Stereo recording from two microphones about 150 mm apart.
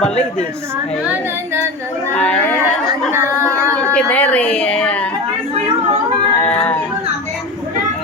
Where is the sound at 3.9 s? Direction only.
10° left (ahead or behind).